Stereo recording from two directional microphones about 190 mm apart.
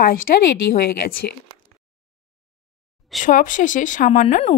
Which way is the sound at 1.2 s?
55° left (ahead or behind).